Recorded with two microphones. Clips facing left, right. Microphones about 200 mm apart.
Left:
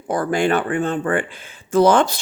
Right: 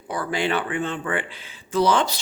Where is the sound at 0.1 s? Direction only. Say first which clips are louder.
Left 6 dB; 45° left (ahead or behind).